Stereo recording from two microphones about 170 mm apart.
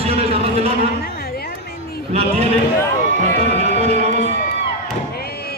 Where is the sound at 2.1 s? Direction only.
40° right (ahead or behind).